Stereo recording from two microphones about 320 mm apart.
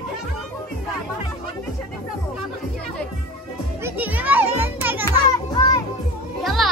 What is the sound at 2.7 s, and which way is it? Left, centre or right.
Music, centre.